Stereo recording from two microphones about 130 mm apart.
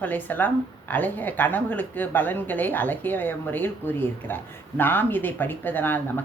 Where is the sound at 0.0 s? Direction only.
15° left (ahead or behind).